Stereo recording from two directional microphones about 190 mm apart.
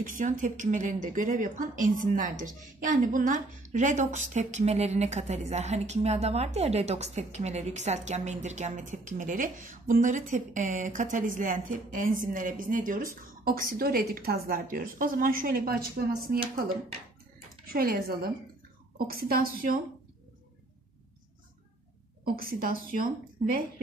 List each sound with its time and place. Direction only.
0.0 s speech: 45° right (ahead or behind)
17.6 s speech: 50° right (ahead or behind)
22.2 s speech: 50° right (ahead or behind)